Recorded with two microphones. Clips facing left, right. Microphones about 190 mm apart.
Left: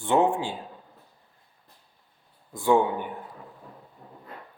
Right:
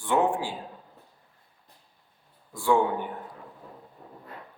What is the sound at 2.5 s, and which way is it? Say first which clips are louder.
Speech: left 2 dB; 20° left (ahead or behind).